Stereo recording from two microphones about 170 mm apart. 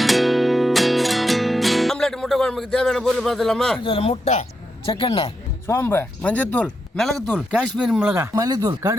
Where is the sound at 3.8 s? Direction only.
35° left (ahead or behind).